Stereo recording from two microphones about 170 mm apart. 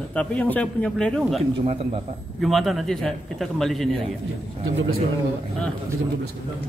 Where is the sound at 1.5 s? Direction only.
35° right (ahead or behind).